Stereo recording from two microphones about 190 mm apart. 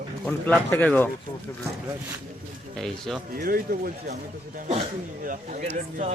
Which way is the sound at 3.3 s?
50° right (ahead or behind).